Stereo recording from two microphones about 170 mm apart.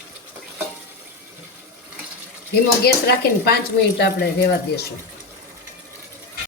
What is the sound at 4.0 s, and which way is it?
Speech, 75° left (ahead or behind).